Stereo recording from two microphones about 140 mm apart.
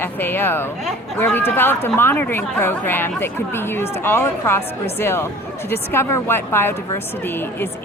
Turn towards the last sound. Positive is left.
turn(degrees=15)  # may be behind; listen again after turning